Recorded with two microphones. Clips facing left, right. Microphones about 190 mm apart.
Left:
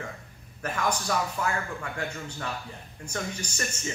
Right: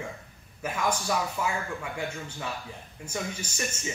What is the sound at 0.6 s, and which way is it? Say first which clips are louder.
Speech: even; 5° right (ahead or behind).